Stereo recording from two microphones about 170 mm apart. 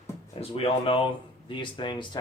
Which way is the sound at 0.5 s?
30° left (ahead or behind).